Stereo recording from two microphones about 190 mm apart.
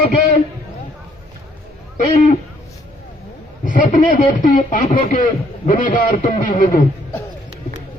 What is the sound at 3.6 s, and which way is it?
Speech, 40° left (ahead or behind).